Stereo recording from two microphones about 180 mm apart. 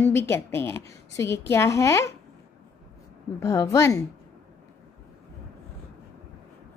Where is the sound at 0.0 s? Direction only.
15° left (ahead or behind).